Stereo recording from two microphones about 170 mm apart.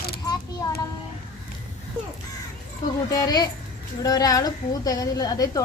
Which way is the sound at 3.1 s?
20° left (ahead or behind).